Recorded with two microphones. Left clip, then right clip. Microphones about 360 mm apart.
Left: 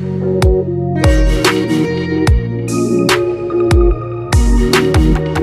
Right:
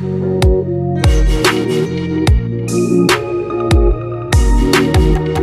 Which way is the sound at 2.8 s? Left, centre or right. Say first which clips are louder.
Even; centre.